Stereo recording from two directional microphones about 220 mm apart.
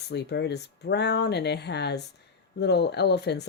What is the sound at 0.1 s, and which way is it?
Speech, 50° left (ahead or behind).